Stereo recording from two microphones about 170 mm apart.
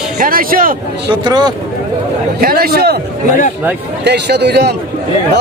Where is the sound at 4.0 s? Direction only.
75° right (ahead or behind).